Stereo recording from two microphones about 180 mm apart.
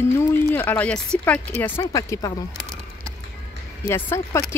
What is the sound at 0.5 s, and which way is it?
Speech, 10° left (ahead or behind).